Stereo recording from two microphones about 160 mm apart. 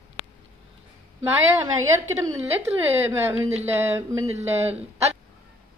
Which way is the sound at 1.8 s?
20° right (ahead or behind).